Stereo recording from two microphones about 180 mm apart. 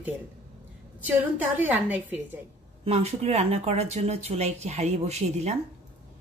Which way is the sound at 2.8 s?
35° right (ahead or behind).